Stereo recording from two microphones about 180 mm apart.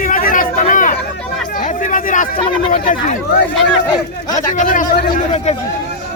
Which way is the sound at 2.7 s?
45° left (ahead or behind).